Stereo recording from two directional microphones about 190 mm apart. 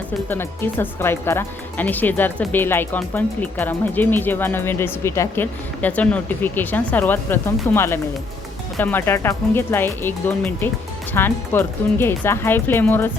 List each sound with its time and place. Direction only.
0.3 s speech: 10° left (ahead or behind)